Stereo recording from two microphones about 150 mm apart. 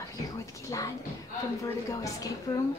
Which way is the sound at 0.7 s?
25° left (ahead or behind).